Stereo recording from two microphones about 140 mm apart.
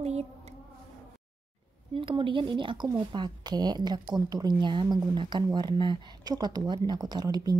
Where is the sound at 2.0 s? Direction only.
35° right (ahead or behind).